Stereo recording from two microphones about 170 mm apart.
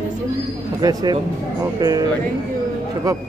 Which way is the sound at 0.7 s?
25° right (ahead or behind).